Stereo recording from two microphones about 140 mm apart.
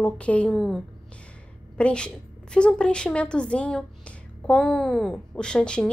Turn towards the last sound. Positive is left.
turn(degrees=5)  # may be behind; listen again after turning